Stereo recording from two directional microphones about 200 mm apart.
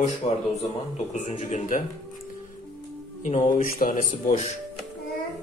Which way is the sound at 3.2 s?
40° left (ahead or behind).